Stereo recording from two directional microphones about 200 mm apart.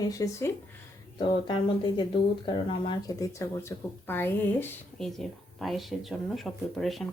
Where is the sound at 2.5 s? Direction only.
25° left (ahead or behind).